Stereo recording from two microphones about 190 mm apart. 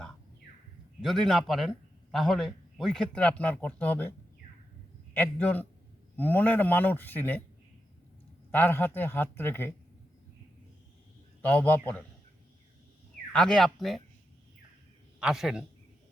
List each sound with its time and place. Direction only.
1.0 s speech: centre (ahead or behind)
5.1 s a man's voice: 10° left (ahead or behind)
8.4 s a man's voice: 10° left (ahead or behind)
11.4 s a man's voice: 10° left (ahead or behind)
13.3 s speech: 5° left (ahead or behind)
15.2 s speech: centre (ahead or behind)